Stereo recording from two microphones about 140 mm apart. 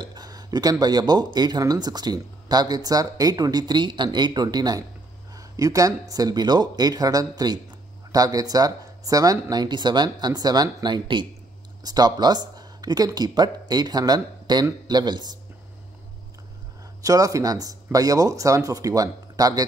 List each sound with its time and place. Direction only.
0.0 s speech: 30° right (ahead or behind)
17.0 s speech: 25° right (ahead or behind)